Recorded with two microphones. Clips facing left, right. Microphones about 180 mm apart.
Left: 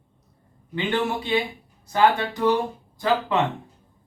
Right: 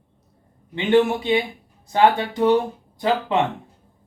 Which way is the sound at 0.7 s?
20° right (ahead or behind).